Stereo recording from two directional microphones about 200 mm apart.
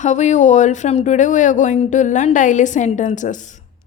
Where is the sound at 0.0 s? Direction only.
35° left (ahead or behind).